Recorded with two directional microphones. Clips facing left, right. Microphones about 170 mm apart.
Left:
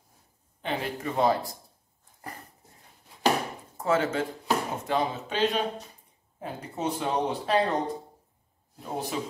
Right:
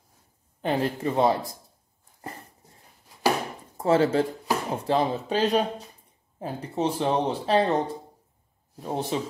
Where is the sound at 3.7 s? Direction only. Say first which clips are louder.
Right 5 dB; 30° right (ahead or behind).